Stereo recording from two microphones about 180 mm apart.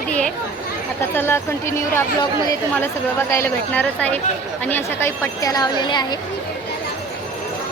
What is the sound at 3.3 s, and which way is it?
A woman's voice, 10° left (ahead or behind).